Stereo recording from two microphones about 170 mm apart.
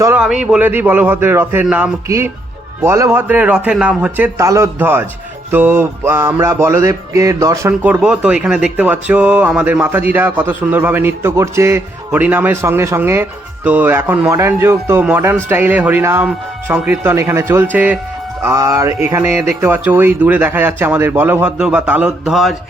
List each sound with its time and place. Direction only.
0.2 s speech: 5° right (ahead or behind)
8.0 s speech: 5° right (ahead or behind)